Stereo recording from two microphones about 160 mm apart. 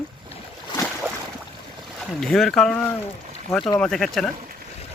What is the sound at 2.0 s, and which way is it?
Speech, centre (ahead or behind).